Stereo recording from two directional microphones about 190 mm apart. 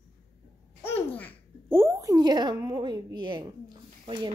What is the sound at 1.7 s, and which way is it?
Speech, 15° right (ahead or behind).